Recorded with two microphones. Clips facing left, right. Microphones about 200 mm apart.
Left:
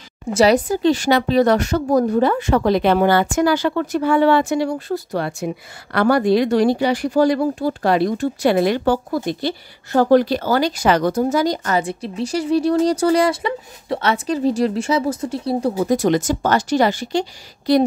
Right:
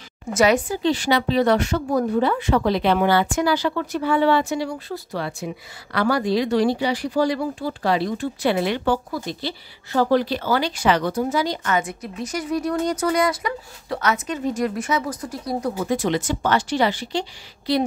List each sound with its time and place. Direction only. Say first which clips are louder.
0.3 s speech: left 4 dB; 35° left (ahead or behind)